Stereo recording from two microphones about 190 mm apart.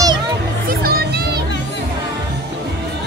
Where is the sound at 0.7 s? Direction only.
55° right (ahead or behind).